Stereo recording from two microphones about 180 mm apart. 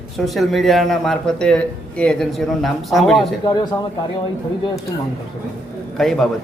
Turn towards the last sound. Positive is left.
turn(degrees=0)  # may be behind; listen again after turning